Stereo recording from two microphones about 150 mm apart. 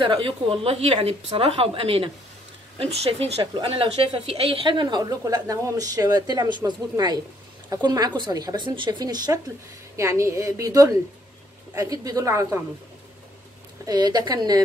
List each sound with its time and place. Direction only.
0.0 s a woman's voice: 35° right (ahead or behind)
13.8 s a woman's voice: 25° right (ahead or behind)